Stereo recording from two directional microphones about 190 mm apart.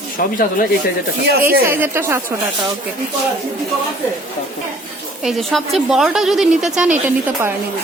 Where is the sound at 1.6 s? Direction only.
10° right (ahead or behind).